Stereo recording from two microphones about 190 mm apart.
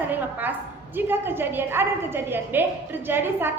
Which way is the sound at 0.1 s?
10° right (ahead or behind).